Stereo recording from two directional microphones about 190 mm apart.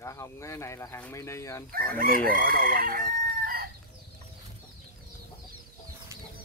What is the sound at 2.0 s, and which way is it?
Chicken, 50° right (ahead or behind).